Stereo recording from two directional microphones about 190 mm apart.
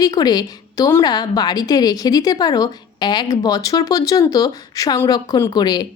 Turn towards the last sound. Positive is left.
turn(degrees=20)  # may be behind; listen again after turning